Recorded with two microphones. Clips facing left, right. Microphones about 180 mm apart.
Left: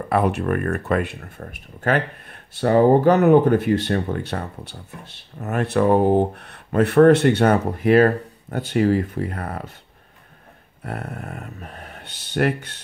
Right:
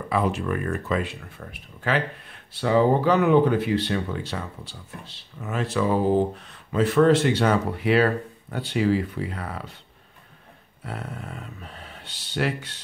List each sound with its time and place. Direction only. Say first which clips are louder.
0.1 s speech: left 4 dB; 65° left (ahead or behind)
1.4 s speech: left 5 dB; 45° left (ahead or behind)
10.8 s speech: left 4 dB; 60° left (ahead or behind)